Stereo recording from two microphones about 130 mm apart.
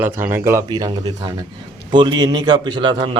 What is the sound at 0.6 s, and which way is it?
A man's voice, 30° right (ahead or behind).